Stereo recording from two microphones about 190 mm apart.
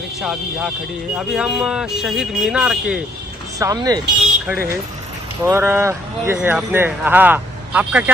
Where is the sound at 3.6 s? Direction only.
20° right (ahead or behind).